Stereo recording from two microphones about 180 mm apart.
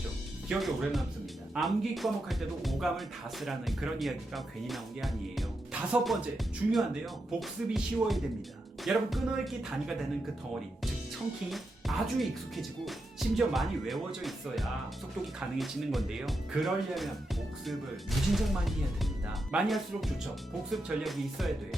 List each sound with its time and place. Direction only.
0.4 s speech: centre (ahead or behind)
11.5 s speech: centre (ahead or behind)